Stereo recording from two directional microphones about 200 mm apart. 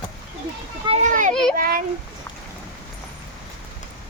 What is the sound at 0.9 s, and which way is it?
Speech, 35° right (ahead or behind).